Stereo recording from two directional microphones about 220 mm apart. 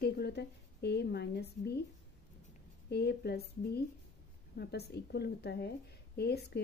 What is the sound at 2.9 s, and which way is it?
A woman's voice, 45° left (ahead or behind).